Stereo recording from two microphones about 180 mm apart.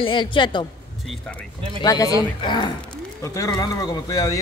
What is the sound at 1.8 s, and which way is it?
A man's voice, 20° left (ahead or behind).